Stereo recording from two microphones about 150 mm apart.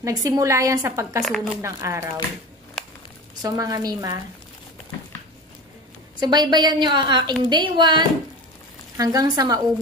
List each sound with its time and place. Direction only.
0.0 s a woman's voice: 25° right (ahead or behind)
1.2 s speech: centre (ahead or behind)
1.6 s a woman's voice: 20° right (ahead or behind)
3.4 s a woman's voice: 25° right (ahead or behind)
6.1 s a woman's voice: 30° right (ahead or behind)